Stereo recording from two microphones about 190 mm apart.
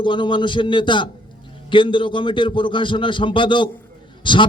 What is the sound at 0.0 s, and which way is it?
A man's voice, 25° left (ahead or behind).